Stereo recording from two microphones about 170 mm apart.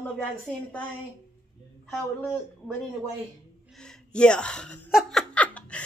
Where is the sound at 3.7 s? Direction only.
5° left (ahead or behind).